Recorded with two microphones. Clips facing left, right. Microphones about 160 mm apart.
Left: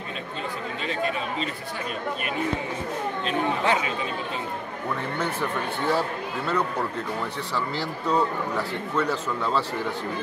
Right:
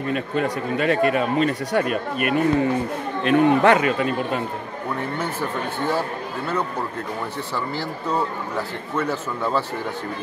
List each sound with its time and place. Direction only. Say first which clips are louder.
0.1 s speech: right 10 dB; 60° right (ahead or behind)
8.9 s a man's voice: right 2 dB; 5° right (ahead or behind)